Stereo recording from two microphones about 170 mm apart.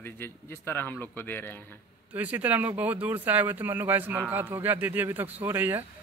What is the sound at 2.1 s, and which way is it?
Speech, 10° right (ahead or behind).